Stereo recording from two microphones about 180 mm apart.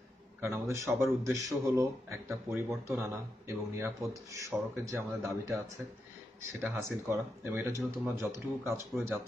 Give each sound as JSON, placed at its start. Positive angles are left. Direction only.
{"t": 0.4, "sound": "a man's voice", "side_deg": -15}
{"t": 6.6, "sound": "a man's voice", "side_deg": -10}